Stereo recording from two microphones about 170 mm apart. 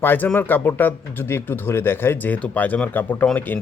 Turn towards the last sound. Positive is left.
turn(degrees=10)  # may be behind; listen again after turning